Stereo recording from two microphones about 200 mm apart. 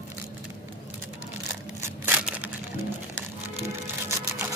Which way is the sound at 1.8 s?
10° right (ahead or behind).